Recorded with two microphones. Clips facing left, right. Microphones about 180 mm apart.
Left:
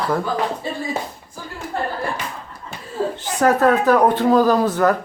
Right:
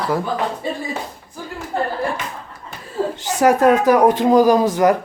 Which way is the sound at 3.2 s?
10° right (ahead or behind).